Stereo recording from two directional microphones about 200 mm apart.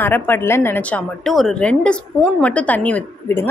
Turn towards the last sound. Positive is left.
turn(degrees=10)  # may be behind; listen again after turning